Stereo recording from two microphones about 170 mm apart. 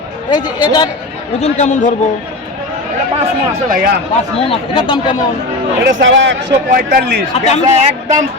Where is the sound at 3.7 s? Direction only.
55° right (ahead or behind).